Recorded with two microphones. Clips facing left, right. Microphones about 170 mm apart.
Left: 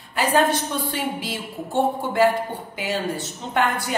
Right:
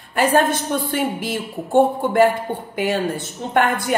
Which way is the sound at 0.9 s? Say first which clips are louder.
Right 5 dB; 50° right (ahead or behind).